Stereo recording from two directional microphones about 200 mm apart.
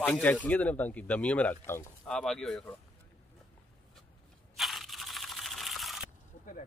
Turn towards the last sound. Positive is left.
turn(degrees=0)  # may be behind; listen again after turning